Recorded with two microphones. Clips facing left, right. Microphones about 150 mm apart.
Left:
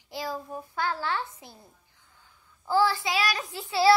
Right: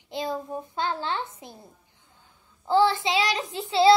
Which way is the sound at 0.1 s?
20° right (ahead or behind).